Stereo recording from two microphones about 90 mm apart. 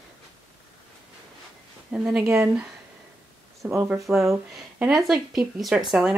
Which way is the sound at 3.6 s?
15° right (ahead or behind).